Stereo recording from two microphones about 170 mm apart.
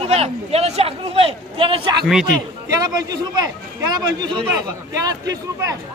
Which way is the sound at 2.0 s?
5° right (ahead or behind).